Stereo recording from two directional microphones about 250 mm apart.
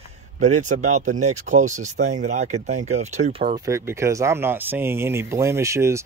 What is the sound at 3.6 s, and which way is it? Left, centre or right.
Speech, centre.